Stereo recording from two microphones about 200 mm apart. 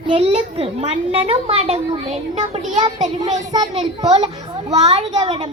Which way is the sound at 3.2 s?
20° right (ahead or behind).